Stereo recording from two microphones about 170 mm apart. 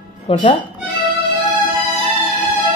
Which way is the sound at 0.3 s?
35° left (ahead or behind).